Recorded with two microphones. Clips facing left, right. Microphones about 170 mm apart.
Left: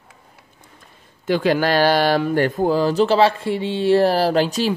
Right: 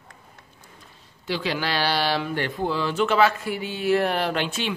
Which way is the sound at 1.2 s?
50° left (ahead or behind).